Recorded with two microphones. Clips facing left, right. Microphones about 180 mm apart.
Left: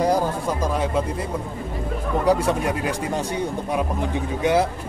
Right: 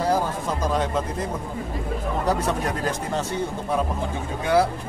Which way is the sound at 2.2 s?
10° left (ahead or behind).